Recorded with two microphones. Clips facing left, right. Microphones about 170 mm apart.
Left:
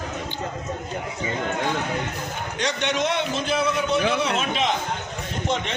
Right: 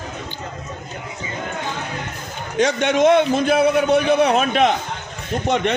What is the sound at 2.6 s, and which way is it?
A man's voice, 50° right (ahead or behind).